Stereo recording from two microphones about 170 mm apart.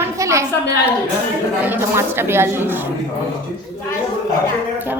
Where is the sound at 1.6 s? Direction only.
10° right (ahead or behind).